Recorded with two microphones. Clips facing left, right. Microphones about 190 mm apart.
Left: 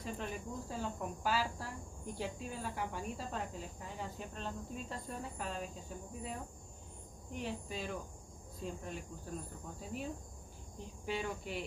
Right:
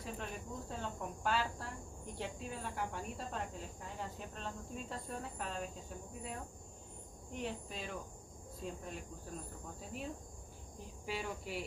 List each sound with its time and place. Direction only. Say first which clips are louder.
0.0 s speech: left 3 dB; centre (ahead or behind)